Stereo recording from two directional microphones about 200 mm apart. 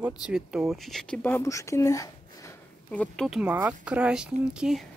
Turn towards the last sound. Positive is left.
turn(degrees=-5)  # may be behind; listen again after turning